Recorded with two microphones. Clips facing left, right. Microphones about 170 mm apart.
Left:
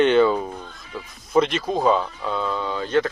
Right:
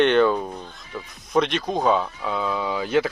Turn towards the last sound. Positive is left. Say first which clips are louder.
# even
turn(degrees=-10)  # may be behind; listen again after turning